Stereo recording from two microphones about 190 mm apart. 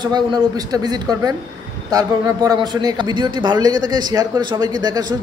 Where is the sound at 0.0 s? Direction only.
20° right (ahead or behind).